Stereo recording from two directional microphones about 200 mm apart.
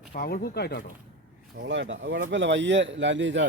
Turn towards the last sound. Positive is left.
turn(degrees=-65)  # may be behind; listen again after turning